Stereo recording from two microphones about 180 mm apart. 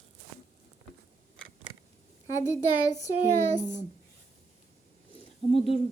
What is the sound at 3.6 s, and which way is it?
Speech, 40° left (ahead or behind).